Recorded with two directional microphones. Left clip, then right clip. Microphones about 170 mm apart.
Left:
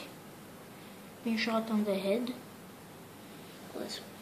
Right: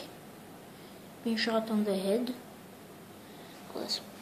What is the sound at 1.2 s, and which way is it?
Speech, 10° right (ahead or behind).